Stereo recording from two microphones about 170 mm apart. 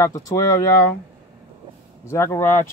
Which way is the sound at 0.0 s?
20° left (ahead or behind).